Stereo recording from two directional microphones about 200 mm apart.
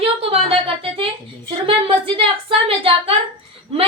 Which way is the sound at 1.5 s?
25° right (ahead or behind).